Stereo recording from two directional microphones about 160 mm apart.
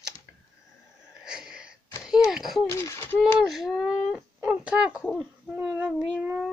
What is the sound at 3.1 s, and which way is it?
Speech, centre (ahead or behind).